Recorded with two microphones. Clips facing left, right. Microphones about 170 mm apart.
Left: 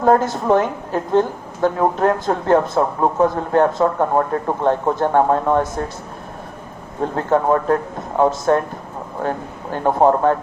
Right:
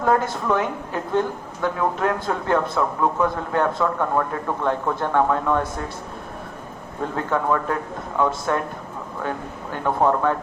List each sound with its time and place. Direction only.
0.0 s a man's voice: 40° left (ahead or behind)
7.0 s a man's voice: 35° left (ahead or behind)
9.8 s a man's voice: 35° left (ahead or behind)